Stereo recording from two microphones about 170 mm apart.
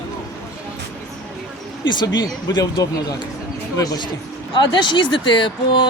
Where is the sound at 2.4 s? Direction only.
20° left (ahead or behind).